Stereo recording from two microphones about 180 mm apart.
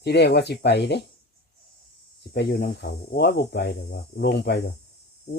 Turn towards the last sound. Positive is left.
turn(degrees=65)  # may be behind; listen again after turning